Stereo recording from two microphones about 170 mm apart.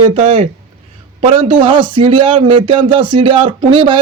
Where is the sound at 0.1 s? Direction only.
35° right (ahead or behind).